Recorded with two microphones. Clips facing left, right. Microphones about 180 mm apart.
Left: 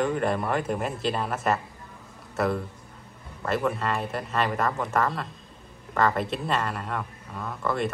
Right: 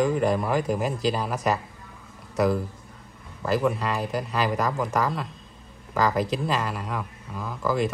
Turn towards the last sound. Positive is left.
turn(degrees=0)  # may be behind; listen again after turning